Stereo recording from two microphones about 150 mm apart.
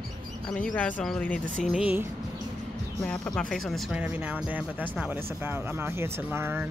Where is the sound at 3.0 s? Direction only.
5° left (ahead or behind).